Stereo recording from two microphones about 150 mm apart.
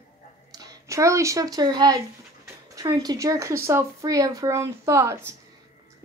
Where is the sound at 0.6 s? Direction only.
20° right (ahead or behind).